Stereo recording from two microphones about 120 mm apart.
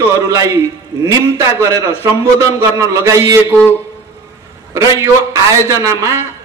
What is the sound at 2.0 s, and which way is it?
A man's voice, 25° right (ahead or behind).